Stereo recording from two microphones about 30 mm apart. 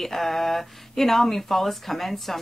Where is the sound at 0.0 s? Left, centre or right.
Centre.